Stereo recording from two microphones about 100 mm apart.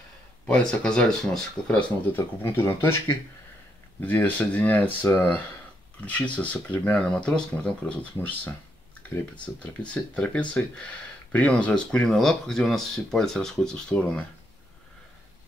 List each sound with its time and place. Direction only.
0.5 s speech: 10° left (ahead or behind)
2.4 s speech: 25° left (ahead or behind); by 14.2 s 10° left (ahead or behind)